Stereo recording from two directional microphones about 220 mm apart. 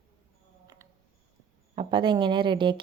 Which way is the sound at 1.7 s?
20° right (ahead or behind).